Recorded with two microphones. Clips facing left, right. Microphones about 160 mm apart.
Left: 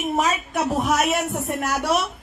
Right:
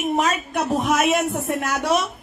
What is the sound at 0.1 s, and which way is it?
A woman's voice, centre (ahead or behind).